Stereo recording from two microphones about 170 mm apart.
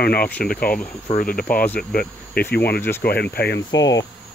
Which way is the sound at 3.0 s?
70° left (ahead or behind).